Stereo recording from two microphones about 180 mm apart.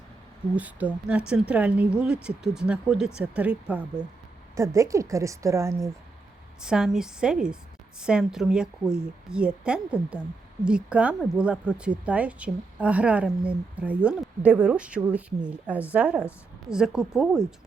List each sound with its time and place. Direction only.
0.5 s a woman's voice: 10° right (ahead or behind)
4.5 s a woman's voice: 15° right (ahead or behind)
6.6 s a woman's voice: 5° right (ahead or behind)